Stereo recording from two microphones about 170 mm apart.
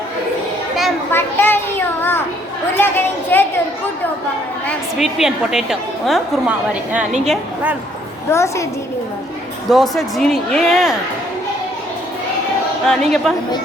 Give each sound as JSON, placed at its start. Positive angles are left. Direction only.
{"t": 1.1, "sound": "children playing", "side_deg": 10}
{"t": 2.7, "sound": "a woman's voice", "side_deg": 10}
{"t": 4.9, "sound": "a woman's voice", "side_deg": 0}
{"t": 7.3, "sound": "a woman's voice", "side_deg": -10}
{"t": 8.3, "sound": "a woman's voice", "side_deg": 15}
{"t": 9.6, "sound": "a woman's voice", "side_deg": 0}
{"t": 12.9, "sound": "a woman's voice", "side_deg": 0}